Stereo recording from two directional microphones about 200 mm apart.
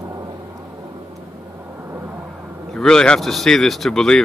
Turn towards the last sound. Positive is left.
turn(degrees=5)  # may be behind; listen again after turning